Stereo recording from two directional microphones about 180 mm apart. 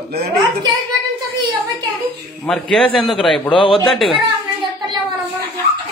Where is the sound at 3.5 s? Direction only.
30° left (ahead or behind).